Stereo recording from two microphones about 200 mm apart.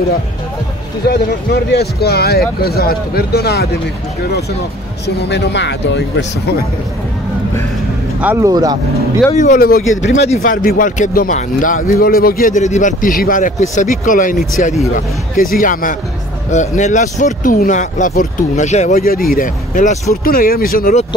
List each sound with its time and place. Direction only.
1.0 s speech: 55° left (ahead or behind)
5.0 s speech: 55° left (ahead or behind)
8.2 s speech: 10° right (ahead or behind)
9.3 s speech: 40° left (ahead or behind); by 10.3 s 60° left (ahead or behind)
10.3 s speech: 40° left (ahead or behind)